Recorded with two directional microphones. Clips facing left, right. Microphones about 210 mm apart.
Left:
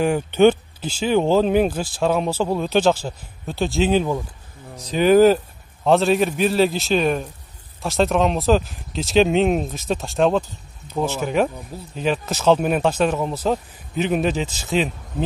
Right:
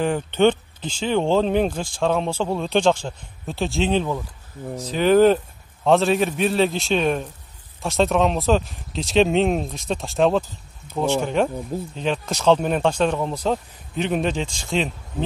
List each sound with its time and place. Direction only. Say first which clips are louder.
0.0 s speech: left 3 dB; 10° left (ahead or behind)